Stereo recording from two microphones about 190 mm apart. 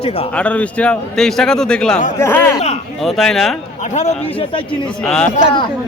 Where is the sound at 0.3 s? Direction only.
5° left (ahead or behind).